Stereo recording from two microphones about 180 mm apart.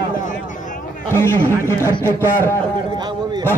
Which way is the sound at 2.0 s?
15° left (ahead or behind).